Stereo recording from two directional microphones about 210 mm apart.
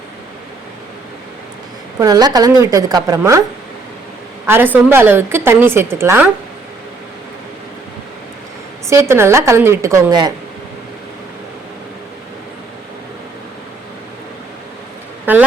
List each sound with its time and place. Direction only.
2.0 s a woman's voice: 20° right (ahead or behind)
4.4 s a woman's voice: 10° right (ahead or behind)
8.9 s a woman's voice: 10° right (ahead or behind)